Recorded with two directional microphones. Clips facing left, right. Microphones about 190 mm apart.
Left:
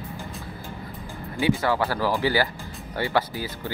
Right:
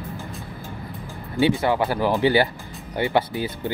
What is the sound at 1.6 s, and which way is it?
Speech, 20° right (ahead or behind).